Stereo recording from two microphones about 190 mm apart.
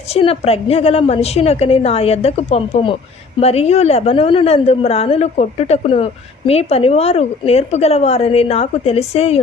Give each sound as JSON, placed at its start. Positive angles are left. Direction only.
{"t": 0.1, "sound": "a woman's voice", "side_deg": 30}